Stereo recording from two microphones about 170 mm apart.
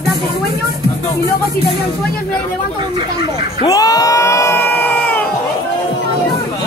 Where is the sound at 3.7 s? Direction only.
20° left (ahead or behind).